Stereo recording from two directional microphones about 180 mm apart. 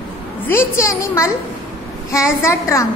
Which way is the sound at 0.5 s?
15° left (ahead or behind).